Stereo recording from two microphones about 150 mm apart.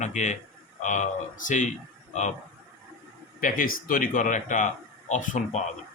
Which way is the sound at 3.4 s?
70° left (ahead or behind).